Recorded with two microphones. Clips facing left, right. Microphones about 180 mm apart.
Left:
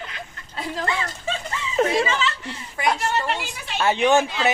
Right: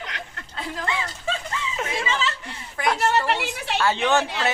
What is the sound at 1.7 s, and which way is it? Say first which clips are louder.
Speech: left 10 dB; 40° left (ahead or behind).